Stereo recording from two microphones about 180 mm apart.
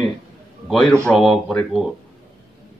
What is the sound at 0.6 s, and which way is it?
Speech, centre (ahead or behind).